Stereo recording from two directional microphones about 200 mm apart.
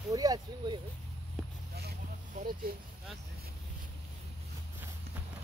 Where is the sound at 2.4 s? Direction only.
45° right (ahead or behind).